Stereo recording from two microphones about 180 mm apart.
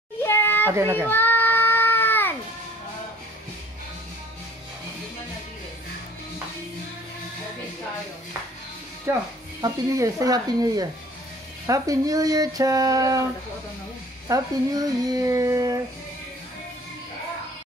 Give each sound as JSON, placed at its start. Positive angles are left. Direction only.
{"t": 0.2, "sound": "a sound", "side_deg": 10}
{"t": 0.7, "sound": "a child's voice", "side_deg": -15}
{"t": 1.0, "sound": "child singing", "side_deg": 10}
{"t": 9.1, "sound": "a child's voice", "side_deg": -15}